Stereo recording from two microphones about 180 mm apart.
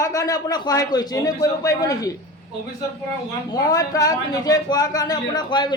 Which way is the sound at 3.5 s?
20° left (ahead or behind).